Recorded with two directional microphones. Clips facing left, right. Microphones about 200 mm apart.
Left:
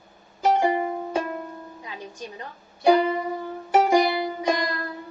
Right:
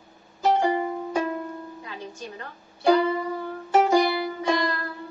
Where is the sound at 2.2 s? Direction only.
15° left (ahead or behind).